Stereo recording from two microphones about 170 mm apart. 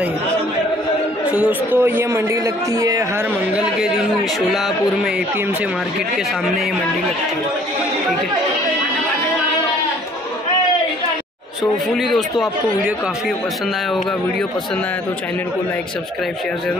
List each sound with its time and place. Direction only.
1.2 s a man's voice: 10° right (ahead or behind)
3.5 s speech: 5° right (ahead or behind)
11.9 s speech: centre (ahead or behind)